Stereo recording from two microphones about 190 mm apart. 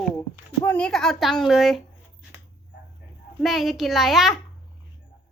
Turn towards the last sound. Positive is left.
turn(degrees=0)  # may be behind; listen again after turning